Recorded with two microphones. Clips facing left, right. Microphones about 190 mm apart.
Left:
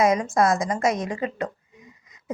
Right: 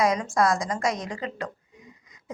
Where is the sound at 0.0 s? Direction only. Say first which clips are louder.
Left 3 dB; 20° left (ahead or behind).